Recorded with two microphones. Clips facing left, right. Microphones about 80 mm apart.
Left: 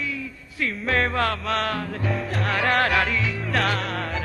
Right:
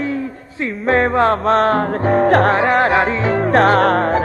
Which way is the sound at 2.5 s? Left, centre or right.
Right.